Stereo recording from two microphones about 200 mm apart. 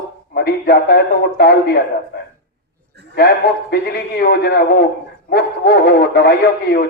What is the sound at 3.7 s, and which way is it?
A man's voice, 50° left (ahead or behind).